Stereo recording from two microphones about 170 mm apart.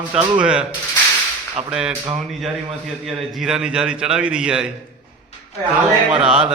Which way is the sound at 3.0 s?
Centre (ahead or behind).